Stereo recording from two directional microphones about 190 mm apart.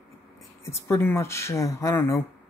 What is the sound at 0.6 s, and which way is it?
Speech, 15° left (ahead or behind).